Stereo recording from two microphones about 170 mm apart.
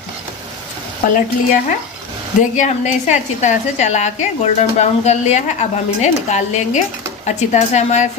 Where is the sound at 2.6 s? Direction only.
45° left (ahead or behind).